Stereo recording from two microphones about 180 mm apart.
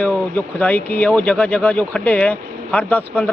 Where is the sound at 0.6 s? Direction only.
10° left (ahead or behind).